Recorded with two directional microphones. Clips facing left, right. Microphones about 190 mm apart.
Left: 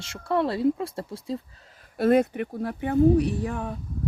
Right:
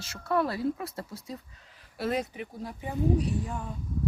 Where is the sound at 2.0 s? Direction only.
55° left (ahead or behind).